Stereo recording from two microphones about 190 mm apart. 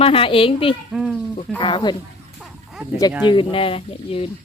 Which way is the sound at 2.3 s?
Centre (ahead or behind).